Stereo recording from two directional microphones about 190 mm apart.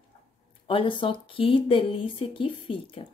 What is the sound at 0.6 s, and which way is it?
Speech, 25° left (ahead or behind).